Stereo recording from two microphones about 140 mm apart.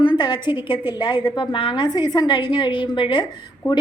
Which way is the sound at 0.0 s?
35° left (ahead or behind).